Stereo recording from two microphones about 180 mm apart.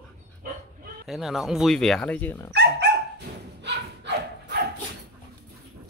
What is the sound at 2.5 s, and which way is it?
Speech, 70° right (ahead or behind).